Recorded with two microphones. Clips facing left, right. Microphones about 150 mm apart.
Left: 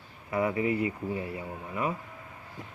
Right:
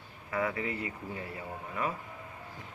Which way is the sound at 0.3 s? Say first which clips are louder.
Left 5 dB; 30° left (ahead or behind).